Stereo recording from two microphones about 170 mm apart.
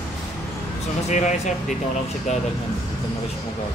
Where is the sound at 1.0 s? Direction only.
45° left (ahead or behind).